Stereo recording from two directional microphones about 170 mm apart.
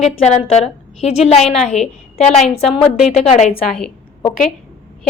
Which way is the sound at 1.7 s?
40° left (ahead or behind).